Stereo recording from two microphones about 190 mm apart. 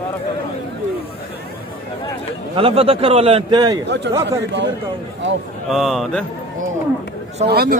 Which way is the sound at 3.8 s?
65° right (ahead or behind).